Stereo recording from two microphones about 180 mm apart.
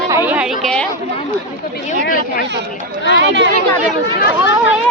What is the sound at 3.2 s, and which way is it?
Speech, 85° right.